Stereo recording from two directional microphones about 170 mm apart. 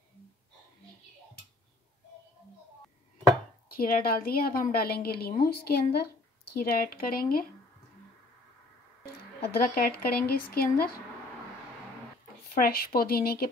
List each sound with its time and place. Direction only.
3.7 s speech: 60° left (ahead or behind)
9.4 s speech: 60° left (ahead or behind)
12.5 s speech: 60° left (ahead or behind)